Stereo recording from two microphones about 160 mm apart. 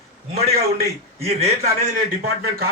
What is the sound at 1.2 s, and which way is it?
Speech, 40° right (ahead or behind).